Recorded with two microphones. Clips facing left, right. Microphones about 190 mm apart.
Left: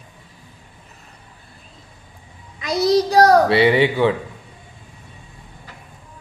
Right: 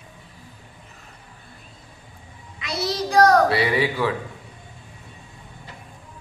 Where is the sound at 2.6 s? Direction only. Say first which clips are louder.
Left 10 dB; 40° left (ahead or behind).